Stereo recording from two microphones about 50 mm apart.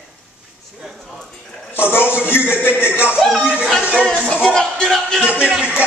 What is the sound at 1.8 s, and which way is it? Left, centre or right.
Speech, left.